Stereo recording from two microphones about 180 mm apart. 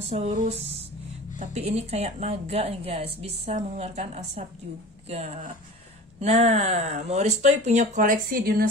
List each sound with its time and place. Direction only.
0.1 s speech: 40° right (ahead or behind)